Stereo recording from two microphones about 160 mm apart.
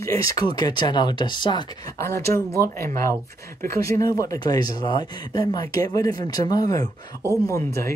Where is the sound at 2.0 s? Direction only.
15° left (ahead or behind).